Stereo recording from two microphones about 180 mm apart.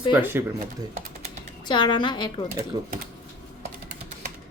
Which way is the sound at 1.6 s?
25° left (ahead or behind).